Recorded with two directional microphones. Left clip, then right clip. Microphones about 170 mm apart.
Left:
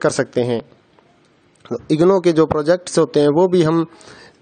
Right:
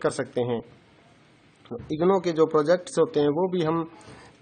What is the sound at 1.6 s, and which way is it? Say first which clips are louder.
A man's voice: left 9 dB; 45° left (ahead or behind).